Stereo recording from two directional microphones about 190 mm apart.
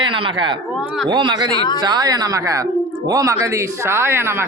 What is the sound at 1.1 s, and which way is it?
Speech, 25° right (ahead or behind).